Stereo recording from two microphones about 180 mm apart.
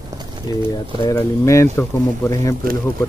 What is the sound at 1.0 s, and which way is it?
Speech, 15° left (ahead or behind).